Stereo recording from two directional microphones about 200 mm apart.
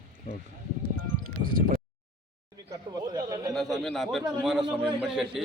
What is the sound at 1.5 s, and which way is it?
Speech, 45° right (ahead or behind).